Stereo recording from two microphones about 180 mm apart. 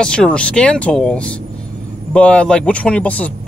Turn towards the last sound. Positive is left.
turn(degrees=10)  # may be behind; listen again after turning